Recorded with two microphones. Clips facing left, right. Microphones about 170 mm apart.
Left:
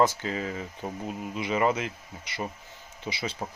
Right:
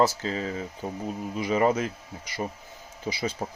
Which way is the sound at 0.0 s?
30° right (ahead or behind).